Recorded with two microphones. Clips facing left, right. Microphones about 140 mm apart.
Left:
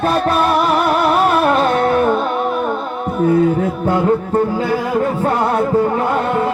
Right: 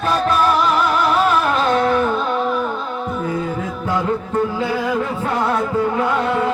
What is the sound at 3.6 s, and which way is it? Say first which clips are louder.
Music: left 6 dB; 60° left (ahead or behind).